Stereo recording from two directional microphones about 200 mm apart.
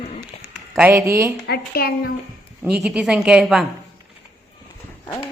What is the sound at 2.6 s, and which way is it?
Speech, 5° right (ahead or behind).